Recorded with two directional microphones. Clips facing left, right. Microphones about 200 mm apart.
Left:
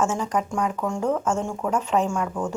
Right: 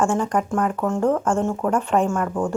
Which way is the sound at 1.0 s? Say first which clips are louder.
Right 4 dB; 55° right (ahead or behind).